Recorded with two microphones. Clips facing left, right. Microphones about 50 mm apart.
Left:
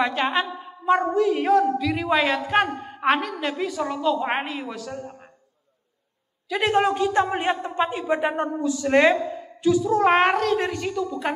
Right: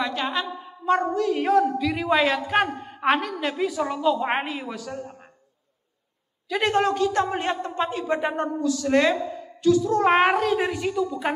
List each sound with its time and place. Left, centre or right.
0.1 s a man's voice: left
0.5 s a man's voice: centre
6.5 s a woman's voice: centre
6.8 s a man's voice: centre
8.6 s a man's voice: left
9.9 s a woman's voice: centre